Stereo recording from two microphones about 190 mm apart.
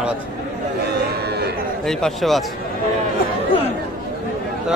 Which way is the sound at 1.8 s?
Centre (ahead or behind).